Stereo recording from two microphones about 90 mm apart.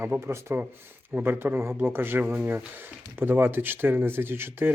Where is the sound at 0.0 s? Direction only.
30° right (ahead or behind).